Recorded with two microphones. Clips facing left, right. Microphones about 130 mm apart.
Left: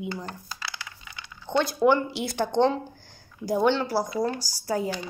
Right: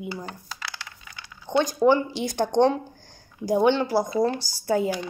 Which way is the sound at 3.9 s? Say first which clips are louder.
Right 4 dB; 25° right (ahead or behind).